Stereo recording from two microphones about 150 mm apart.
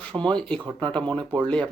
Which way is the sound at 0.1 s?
35° right (ahead or behind).